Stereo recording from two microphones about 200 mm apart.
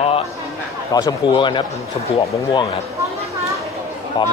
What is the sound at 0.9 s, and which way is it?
Speech, 20° left (ahead or behind).